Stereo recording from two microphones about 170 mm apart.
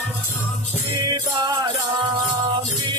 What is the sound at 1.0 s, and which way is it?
Music, 25° right (ahead or behind).